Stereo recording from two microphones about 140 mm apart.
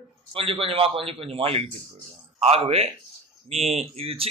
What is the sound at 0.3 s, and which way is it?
A man's voice, 40° right (ahead or behind).